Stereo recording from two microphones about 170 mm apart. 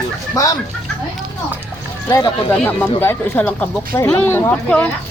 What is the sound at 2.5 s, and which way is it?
Speech, 10° left (ahead or behind).